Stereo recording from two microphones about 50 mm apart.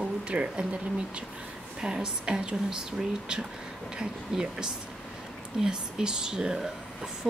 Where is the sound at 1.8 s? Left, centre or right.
Centre.